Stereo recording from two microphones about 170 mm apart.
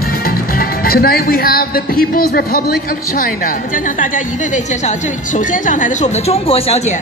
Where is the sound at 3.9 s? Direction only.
50° left (ahead or behind).